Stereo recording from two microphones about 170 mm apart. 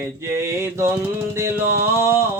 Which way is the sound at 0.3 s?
15° right (ahead or behind).